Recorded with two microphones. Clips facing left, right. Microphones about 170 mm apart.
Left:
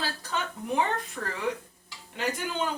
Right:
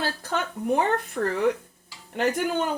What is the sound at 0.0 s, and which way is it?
Speech, 55° right (ahead or behind).